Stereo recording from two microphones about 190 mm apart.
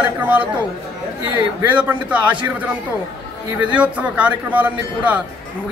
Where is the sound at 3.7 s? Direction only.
5° right (ahead or behind).